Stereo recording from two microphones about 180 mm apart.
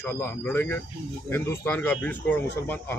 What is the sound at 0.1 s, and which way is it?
Speech, 10° left (ahead or behind).